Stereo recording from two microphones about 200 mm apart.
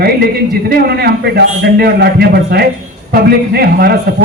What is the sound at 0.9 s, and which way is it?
A man's voice, 55° right (ahead or behind).